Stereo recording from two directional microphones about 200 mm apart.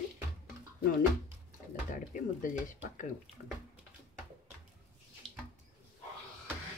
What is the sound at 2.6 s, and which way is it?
Speech, 40° left (ahead or behind).